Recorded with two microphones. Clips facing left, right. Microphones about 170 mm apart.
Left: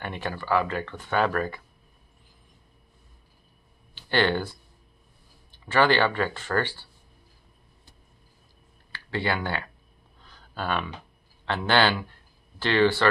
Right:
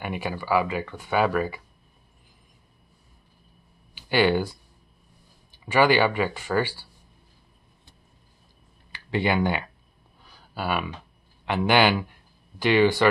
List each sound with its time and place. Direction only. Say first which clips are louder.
0.0 s speech: right 2 dB; 10° right (ahead or behind)
3.9 s speech: right 3 dB; 10° right (ahead or behind)
8.9 s speech: right 4 dB; 15° right (ahead or behind)
10.2 s a sound: right 2 dB; 10° right (ahead or behind)
11.4 s speech: right 2 dB; 15° right (ahead or behind)